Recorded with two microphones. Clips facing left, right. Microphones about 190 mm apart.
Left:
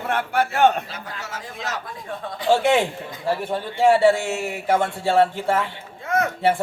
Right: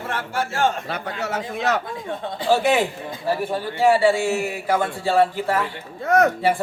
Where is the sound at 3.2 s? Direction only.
25° left (ahead or behind).